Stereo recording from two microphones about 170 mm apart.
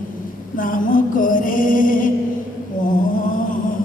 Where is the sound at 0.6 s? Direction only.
55° left (ahead or behind).